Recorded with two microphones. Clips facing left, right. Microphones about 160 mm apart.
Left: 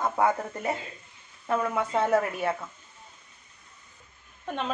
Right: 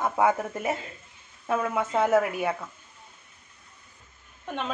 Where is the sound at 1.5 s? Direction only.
10° right (ahead or behind).